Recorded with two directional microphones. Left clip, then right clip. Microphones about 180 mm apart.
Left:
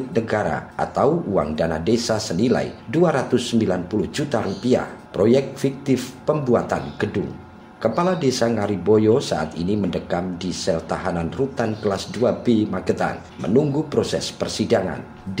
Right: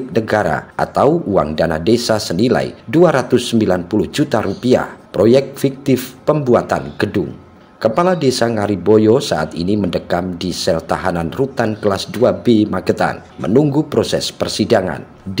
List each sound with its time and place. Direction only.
0.1 s a man's voice: 40° right (ahead or behind)